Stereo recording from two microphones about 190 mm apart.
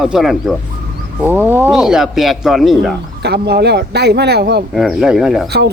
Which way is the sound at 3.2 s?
60° right (ahead or behind).